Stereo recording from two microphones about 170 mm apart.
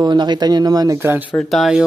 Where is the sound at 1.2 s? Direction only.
5° left (ahead or behind).